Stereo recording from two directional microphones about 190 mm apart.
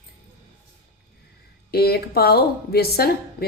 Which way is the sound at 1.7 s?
55° left (ahead or behind).